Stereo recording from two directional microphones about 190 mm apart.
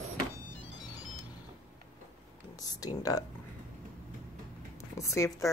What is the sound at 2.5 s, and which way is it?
Speech, 20° left (ahead or behind).